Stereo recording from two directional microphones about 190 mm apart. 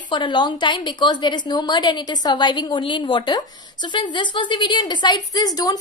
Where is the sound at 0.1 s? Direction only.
25° left (ahead or behind).